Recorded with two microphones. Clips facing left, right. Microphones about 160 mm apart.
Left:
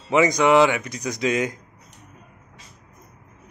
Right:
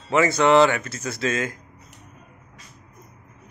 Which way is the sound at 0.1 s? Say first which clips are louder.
Even; 15° left (ahead or behind).